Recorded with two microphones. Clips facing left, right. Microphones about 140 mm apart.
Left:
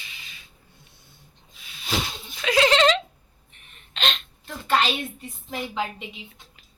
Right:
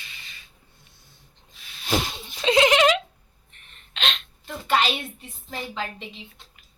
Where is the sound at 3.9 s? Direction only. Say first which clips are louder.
Left 1 dB; centre (ahead or behind).